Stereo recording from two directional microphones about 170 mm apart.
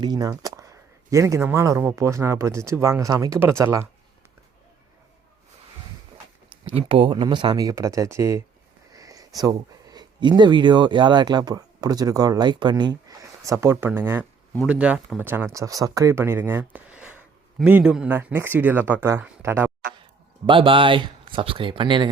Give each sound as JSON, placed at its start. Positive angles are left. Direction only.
{"t": 0.0, "sound": "speech", "side_deg": -25}
{"t": 6.7, "sound": "speech", "side_deg": -35}
{"t": 8.9, "sound": "a sound", "side_deg": -20}
{"t": 9.4, "sound": "speech", "side_deg": -20}
{"t": 20.5, "sound": "speech", "side_deg": -30}